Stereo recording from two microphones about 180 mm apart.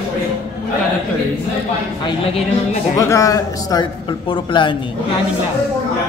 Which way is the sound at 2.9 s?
15° left (ahead or behind).